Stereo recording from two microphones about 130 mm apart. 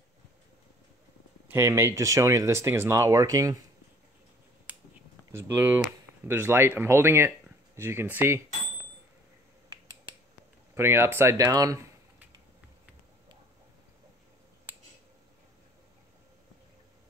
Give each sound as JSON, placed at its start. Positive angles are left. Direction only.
{"t": 1.5, "sound": "speech", "side_deg": -20}
{"t": 5.3, "sound": "speech", "side_deg": -20}
{"t": 10.7, "sound": "speech", "side_deg": -20}